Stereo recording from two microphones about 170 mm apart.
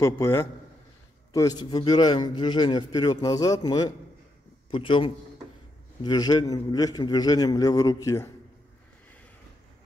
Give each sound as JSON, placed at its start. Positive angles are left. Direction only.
{"t": 0.2, "sound": "a man's voice", "side_deg": 15}